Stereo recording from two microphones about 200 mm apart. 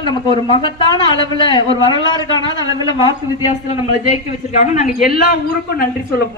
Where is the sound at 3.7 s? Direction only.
35° left (ahead or behind).